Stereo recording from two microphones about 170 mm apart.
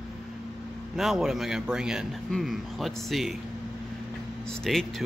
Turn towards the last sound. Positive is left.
turn(degrees=0)  # may be behind; listen again after turning